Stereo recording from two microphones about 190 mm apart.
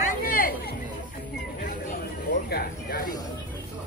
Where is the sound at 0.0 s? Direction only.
50° left (ahead or behind).